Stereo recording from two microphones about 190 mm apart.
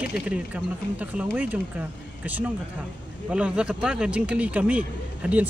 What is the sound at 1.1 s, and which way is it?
Speech, 10° right (ahead or behind).